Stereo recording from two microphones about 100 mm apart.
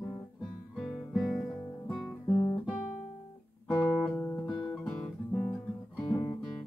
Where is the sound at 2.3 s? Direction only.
60° left (ahead or behind).